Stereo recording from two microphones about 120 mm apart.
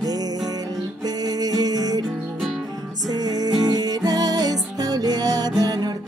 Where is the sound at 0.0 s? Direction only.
30° right (ahead or behind).